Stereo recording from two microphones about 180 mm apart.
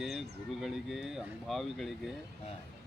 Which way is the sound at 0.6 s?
Centre (ahead or behind).